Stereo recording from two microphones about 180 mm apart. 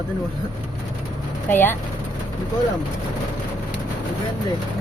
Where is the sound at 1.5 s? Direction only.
10° left (ahead or behind).